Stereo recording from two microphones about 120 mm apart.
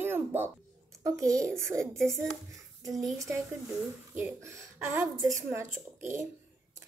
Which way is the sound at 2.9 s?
Centre (ahead or behind).